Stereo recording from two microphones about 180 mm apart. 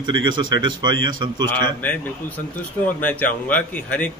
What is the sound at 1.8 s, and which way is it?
Speech, 10° left (ahead or behind).